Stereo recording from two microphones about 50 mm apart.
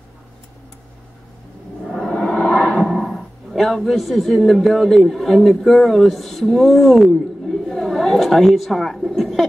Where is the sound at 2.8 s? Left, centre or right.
Centre.